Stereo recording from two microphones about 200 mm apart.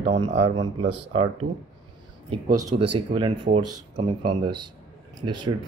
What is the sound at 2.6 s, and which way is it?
Speech, 20° right (ahead or behind).